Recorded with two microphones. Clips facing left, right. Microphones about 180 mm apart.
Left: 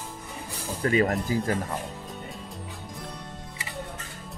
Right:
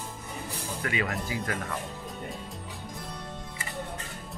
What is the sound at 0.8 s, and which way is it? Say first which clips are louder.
Speech: left 9 dB; 40° left (ahead or behind).